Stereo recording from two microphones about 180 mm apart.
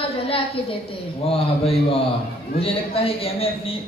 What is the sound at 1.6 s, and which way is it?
A man's voice, 35° left (ahead or behind).